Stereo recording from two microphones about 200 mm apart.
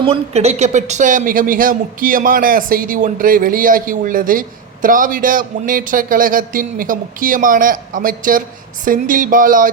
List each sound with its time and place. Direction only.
0.0 s speech: 30° right (ahead or behind)